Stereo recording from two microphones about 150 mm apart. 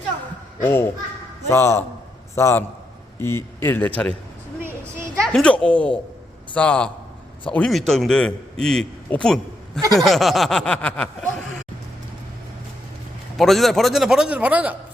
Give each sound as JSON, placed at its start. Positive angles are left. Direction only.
{"t": 0.6, "sound": "a man's voice", "side_deg": 15}
{"t": 5.2, "sound": "a man's voice", "side_deg": 5}
{"t": 9.9, "sound": "chuckle", "side_deg": 0}
{"t": 13.3, "sound": "a man's voice", "side_deg": 0}